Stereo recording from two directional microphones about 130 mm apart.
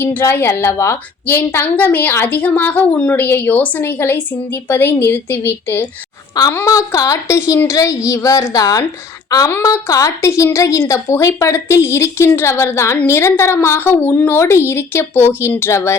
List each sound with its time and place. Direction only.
0.0 s a woman's voice: 15° left (ahead or behind)